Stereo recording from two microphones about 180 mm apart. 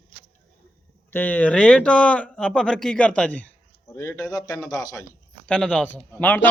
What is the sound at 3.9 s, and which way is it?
A man's voice, 20° left (ahead or behind).